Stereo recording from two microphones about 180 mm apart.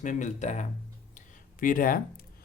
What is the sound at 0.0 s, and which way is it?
Speech, 45° left (ahead or behind).